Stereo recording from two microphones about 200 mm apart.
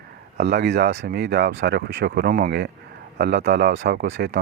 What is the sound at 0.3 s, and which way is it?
Speech, 55° right (ahead or behind).